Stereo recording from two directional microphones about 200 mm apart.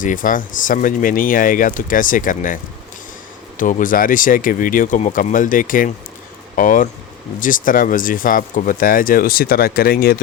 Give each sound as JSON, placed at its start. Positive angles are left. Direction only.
{"t": 0.0, "sound": "speech", "side_deg": 40}
{"t": 3.6, "sound": "speech", "side_deg": 40}